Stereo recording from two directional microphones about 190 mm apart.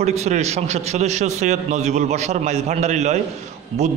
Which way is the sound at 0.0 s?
35° right (ahead or behind).